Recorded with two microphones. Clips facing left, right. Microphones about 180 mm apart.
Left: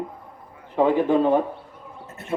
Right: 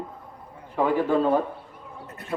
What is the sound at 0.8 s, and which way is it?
Speech, 20° left (ahead or behind).